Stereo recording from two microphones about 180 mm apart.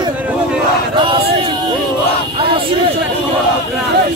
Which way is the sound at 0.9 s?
25° right (ahead or behind).